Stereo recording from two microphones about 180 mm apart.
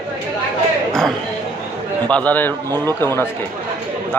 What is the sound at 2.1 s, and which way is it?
Speech, 5° left (ahead or behind).